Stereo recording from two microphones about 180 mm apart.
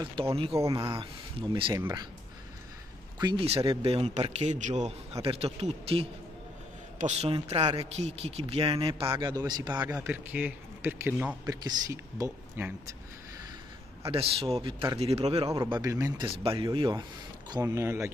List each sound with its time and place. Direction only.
0.0 s speech: 30° right (ahead or behind)
0.6 s a man's voice: 20° right (ahead or behind)
3.2 s a man's voice: 30° right (ahead or behind)
9.0 s speech: 15° right (ahead or behind)
9.8 s a man's voice: 10° right (ahead or behind)
14.1 s a man's voice: 30° right (ahead or behind)
15.4 s a man's voice: 20° right (ahead or behind)